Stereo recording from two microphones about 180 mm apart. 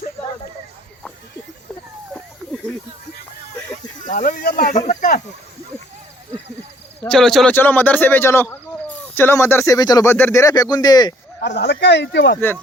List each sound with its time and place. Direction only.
4.0 s speech: 45° left (ahead or behind)
7.1 s speech: centre (ahead or behind); by 11.1 s 20° left (ahead or behind)
11.4 s speech: 70° left (ahead or behind)